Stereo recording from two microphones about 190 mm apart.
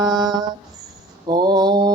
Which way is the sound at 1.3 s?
20° right (ahead or behind).